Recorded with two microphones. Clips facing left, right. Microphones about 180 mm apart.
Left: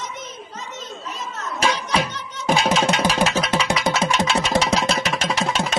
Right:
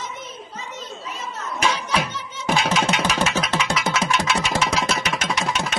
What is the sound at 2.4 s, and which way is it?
Music, 30° left (ahead or behind).